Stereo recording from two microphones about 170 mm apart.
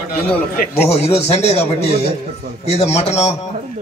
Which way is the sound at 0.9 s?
40° left (ahead or behind).